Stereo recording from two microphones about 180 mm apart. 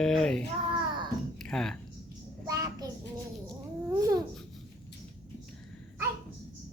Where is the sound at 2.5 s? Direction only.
20° right (ahead or behind).